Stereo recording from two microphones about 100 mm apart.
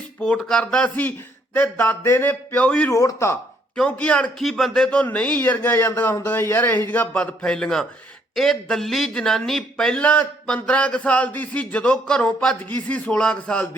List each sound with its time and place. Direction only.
0.2 s a man's voice: 10° left (ahead or behind)
2.9 s speech: 35° left (ahead or behind)
3.8 s a man's voice: 10° left (ahead or behind)